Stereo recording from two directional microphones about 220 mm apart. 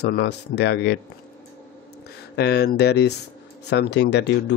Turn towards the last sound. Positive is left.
turn(degrees=50)  # may be behind; listen again after turning